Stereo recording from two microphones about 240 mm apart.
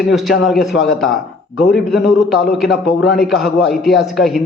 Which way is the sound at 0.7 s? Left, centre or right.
Left.